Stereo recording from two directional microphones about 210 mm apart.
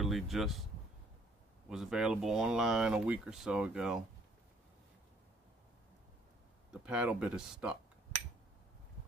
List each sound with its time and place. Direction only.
0.0 s speech: centre (ahead or behind)
1.7 s speech: 5° right (ahead or behind)
6.9 s speech: 5° right (ahead or behind)